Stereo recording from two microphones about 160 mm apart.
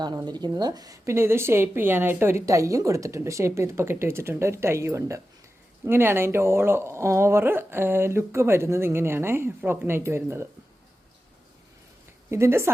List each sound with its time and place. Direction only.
0.0 s a woman's voice: 25° right (ahead or behind)
12.3 s a woman's voice: 15° right (ahead or behind)